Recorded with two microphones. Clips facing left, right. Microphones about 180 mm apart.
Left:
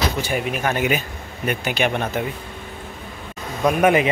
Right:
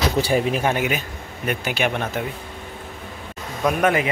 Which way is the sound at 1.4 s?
5° right (ahead or behind).